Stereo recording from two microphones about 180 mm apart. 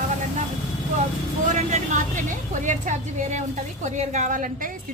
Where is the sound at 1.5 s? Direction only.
45° right (ahead or behind).